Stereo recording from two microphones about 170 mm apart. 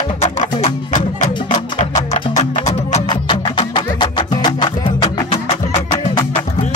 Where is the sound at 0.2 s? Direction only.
40° left (ahead or behind).